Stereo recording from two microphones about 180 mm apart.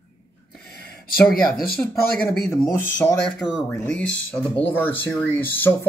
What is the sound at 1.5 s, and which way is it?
Speech, 55° left (ahead or behind).